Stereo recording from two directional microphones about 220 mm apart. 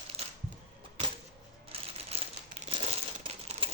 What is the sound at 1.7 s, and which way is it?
Crumpling, 25° right (ahead or behind).